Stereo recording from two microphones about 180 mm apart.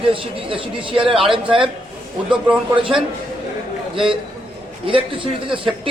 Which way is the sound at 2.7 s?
30° right (ahead or behind).